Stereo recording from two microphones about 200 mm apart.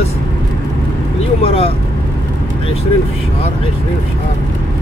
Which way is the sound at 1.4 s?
30° left (ahead or behind).